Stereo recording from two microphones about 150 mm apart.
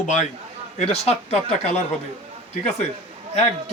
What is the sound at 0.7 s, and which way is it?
Speech, 45° left (ahead or behind).